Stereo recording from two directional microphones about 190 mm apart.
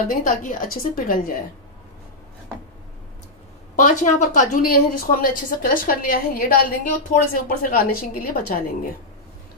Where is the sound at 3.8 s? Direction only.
40° left (ahead or behind).